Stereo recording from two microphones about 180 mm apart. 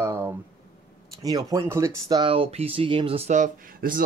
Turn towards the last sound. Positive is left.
turn(degrees=-50)  # may be behind; listen again after turning